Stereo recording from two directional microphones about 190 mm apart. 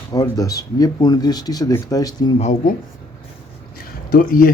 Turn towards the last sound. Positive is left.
turn(degrees=50)  # may be behind; listen again after turning